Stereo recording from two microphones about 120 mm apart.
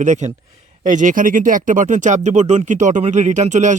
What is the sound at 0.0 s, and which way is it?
Speech, 85° right.